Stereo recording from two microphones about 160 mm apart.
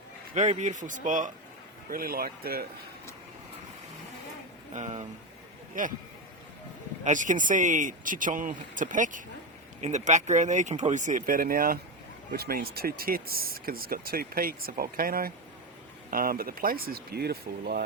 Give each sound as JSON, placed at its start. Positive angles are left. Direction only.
{"t": 0.3, "sound": "speech", "side_deg": -50}
{"t": 1.9, "sound": "speech", "side_deg": -65}
{"t": 4.7, "sound": "speech", "side_deg": -45}
{"t": 5.7, "sound": "speech", "side_deg": -55}
{"t": 7.0, "sound": "speech", "side_deg": -55}